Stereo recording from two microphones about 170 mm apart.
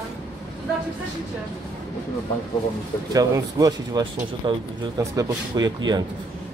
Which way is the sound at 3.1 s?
20° right (ahead or behind).